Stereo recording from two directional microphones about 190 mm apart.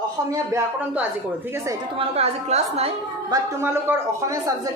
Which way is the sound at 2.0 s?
35° right (ahead or behind).